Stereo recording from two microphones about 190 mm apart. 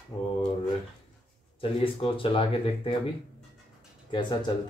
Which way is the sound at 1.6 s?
30° left (ahead or behind).